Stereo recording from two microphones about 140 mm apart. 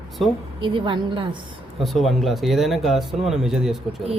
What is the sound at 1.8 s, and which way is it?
A man's voice, centre (ahead or behind).